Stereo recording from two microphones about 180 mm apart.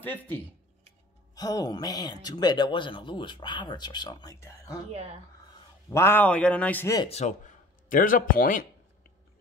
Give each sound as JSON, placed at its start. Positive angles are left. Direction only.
{"t": 0.0, "sound": "a man's voice", "side_deg": 10}
{"t": 1.3, "sound": "speech", "side_deg": 20}
{"t": 4.8, "sound": "speech", "side_deg": -35}
{"t": 5.9, "sound": "a man's voice", "side_deg": 15}
{"t": 7.1, "sound": "speech", "side_deg": 40}